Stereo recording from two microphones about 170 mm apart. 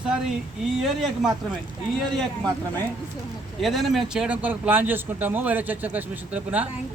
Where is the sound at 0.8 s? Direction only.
Centre (ahead or behind).